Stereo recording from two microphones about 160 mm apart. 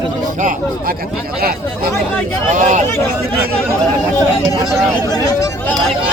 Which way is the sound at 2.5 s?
50° right (ahead or behind).